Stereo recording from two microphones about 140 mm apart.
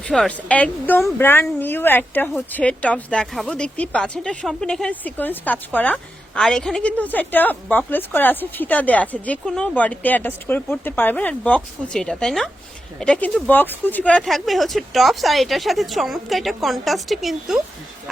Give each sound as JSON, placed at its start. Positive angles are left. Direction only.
{"t": 0.0, "sound": "speech", "side_deg": 5}
{"t": 14.2, "sound": "speech", "side_deg": 0}